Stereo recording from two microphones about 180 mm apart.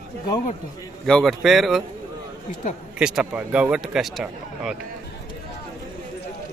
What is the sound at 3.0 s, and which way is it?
A man's voice, 5° right (ahead or behind).